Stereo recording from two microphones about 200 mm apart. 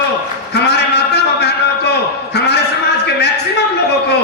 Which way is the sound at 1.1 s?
55° left (ahead or behind).